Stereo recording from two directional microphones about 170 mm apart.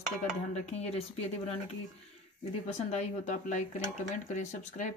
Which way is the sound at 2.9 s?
40° left (ahead or behind).